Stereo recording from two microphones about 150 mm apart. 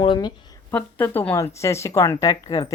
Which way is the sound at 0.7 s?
15° left (ahead or behind).